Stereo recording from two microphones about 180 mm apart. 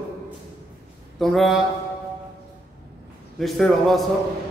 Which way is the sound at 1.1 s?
Centre (ahead or behind).